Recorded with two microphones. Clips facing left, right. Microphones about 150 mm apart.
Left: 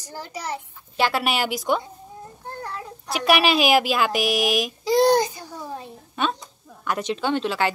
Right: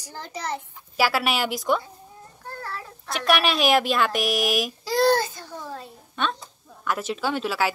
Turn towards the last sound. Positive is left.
turn(degrees=-5)  # may be behind; listen again after turning